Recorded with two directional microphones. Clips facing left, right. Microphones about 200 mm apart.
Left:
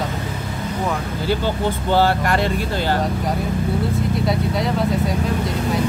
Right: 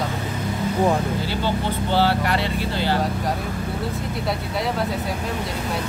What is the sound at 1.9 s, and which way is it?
Speech, 45° left (ahead or behind).